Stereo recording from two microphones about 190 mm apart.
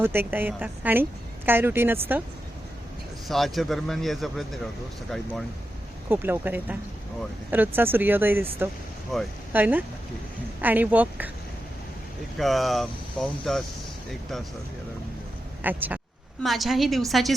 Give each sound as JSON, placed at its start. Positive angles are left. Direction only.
{"t": 0.0, "sound": "speech", "side_deg": -10}
{"t": 3.2, "sound": "speech", "side_deg": 0}
{"t": 6.1, "sound": "speech", "side_deg": -10}
{"t": 9.1, "sound": "speech", "side_deg": 0}
{"t": 12.4, "sound": "speech", "side_deg": 0}
{"t": 15.6, "sound": "speech", "side_deg": -10}